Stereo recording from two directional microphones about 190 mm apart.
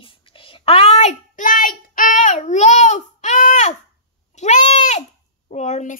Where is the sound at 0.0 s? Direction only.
25° left (ahead or behind).